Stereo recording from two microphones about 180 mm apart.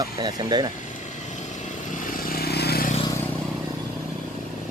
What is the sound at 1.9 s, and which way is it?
Vehicle, 45° left (ahead or behind).